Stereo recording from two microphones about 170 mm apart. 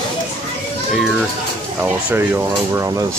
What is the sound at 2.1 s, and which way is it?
Speech, 15° right (ahead or behind).